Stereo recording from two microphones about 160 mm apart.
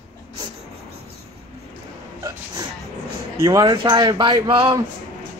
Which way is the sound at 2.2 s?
25° right (ahead or behind).